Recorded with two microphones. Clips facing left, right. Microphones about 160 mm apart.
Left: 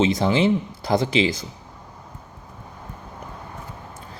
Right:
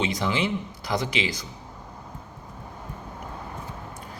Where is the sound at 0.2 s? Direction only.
35° left (ahead or behind).